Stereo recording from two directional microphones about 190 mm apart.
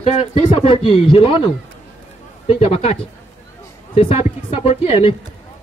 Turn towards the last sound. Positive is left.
turn(degrees=30)  # may be behind; listen again after turning